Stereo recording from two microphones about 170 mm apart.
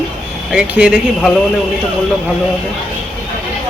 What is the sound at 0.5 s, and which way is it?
Speech, 5° right (ahead or behind).